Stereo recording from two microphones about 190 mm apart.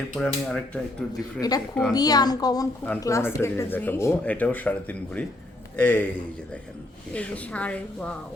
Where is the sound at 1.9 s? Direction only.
20° left (ahead or behind).